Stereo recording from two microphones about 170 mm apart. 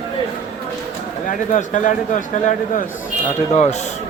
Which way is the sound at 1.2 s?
50° left (ahead or behind).